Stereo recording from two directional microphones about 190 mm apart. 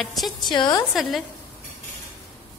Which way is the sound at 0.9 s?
Centre (ahead or behind).